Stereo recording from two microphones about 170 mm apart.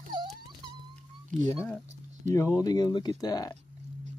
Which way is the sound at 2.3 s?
15° left (ahead or behind).